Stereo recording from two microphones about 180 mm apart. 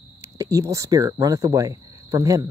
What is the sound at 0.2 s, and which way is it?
Speech, 15° right (ahead or behind).